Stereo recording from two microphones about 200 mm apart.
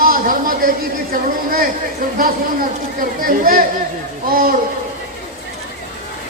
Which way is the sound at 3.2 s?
45° right (ahead or behind).